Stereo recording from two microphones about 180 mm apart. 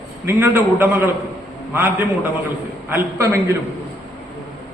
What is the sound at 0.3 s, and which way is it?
A man's voice, 10° right (ahead or behind).